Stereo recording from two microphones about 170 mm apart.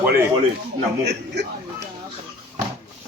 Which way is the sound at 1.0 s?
90° right.